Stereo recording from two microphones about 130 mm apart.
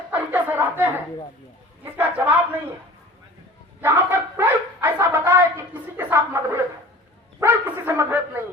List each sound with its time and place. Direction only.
0.1 s a sound: 15° right (ahead or behind)
1.8 s speech: 15° right (ahead or behind)
3.8 s bow-wow: 20° right (ahead or behind)
6.0 s a woman's voice: 15° right (ahead or behind)
7.3 s bow-wow: 15° right (ahead or behind)